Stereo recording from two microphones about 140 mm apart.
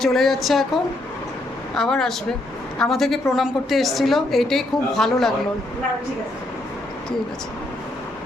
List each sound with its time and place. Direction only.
0.0 s a woman's voice: centre (ahead or behind)
1.7 s a woman's voice: 5° left (ahead or behind)